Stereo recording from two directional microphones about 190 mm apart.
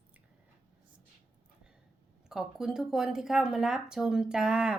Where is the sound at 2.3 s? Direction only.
Centre (ahead or behind).